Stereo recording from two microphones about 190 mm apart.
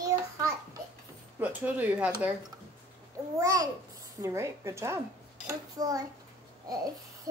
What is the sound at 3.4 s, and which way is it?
A woman's voice, 20° right (ahead or behind).